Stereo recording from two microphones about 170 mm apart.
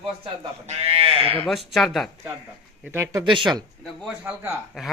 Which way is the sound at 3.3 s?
25° right (ahead or behind).